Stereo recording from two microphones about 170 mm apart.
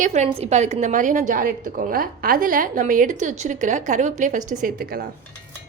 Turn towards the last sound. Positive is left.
turn(degrees=-60)  # may be behind; listen again after turning